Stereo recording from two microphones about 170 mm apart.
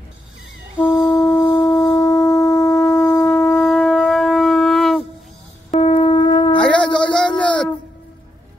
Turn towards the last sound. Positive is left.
turn(degrees=5)  # may be behind; listen again after turning